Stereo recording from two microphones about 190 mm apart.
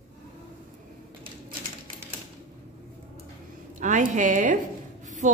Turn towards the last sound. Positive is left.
turn(degrees=-40)  # may be behind; listen again after turning